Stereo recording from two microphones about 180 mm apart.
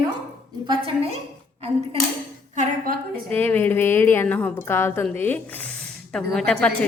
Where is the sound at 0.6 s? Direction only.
30° right (ahead or behind).